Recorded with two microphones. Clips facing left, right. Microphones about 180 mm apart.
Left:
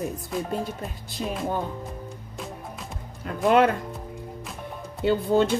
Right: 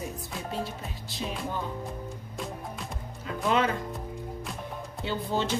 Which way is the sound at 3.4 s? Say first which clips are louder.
Left 7 dB; 55° left (ahead or behind).